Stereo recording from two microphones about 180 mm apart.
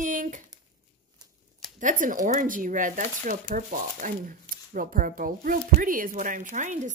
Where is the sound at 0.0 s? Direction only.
45° right (ahead or behind).